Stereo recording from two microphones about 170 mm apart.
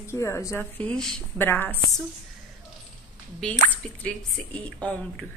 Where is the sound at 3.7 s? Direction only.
5° left (ahead or behind).